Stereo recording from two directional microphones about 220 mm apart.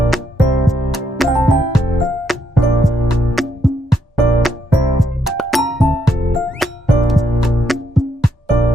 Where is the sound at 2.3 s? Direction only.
Centre (ahead or behind).